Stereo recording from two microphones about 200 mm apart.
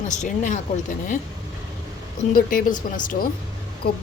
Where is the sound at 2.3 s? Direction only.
45° left (ahead or behind).